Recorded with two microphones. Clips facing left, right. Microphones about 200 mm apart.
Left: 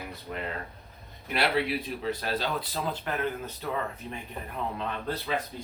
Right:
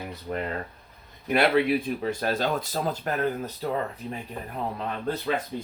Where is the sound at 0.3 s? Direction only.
50° right (ahead or behind).